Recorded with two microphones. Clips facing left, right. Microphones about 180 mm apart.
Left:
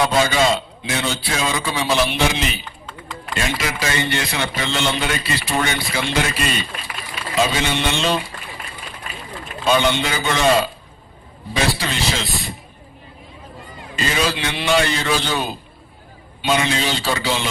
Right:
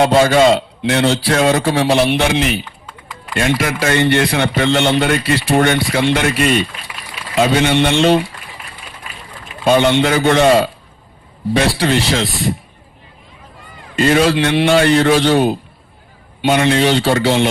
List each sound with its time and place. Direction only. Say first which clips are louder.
0.0 s a man's voice: right 7 dB; 60° right (ahead or behind)
9.8 s speech: right 8 dB; 65° right (ahead or behind)
13.9 s speech: right 9 dB; 65° right (ahead or behind)